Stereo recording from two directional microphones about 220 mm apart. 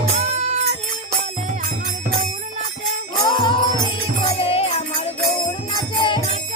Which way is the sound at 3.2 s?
20° left (ahead or behind).